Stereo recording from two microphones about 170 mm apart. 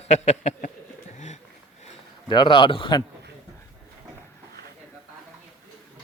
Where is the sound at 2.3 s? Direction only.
30° left (ahead or behind).